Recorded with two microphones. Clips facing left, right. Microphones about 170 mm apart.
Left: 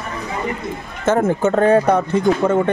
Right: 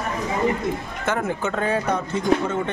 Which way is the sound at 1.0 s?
45° left (ahead or behind).